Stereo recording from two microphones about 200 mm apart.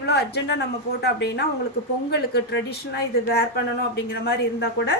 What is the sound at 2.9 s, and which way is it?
A woman's voice, 55° left (ahead or behind).